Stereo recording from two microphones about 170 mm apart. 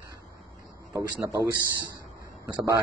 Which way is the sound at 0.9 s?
20° right (ahead or behind).